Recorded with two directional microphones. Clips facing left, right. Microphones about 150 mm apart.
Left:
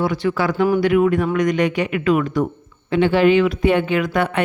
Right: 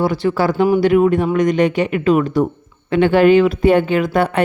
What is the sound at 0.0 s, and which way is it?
Speech, 35° right (ahead or behind).